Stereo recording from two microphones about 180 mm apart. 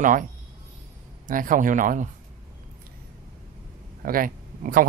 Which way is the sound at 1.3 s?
50° right (ahead or behind).